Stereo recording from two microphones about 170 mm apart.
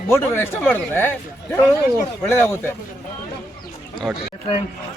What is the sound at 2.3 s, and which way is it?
Speech, 15° left (ahead or behind).